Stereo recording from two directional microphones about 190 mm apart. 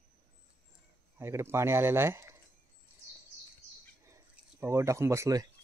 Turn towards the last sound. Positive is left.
turn(degrees=-15)  # may be behind; listen again after turning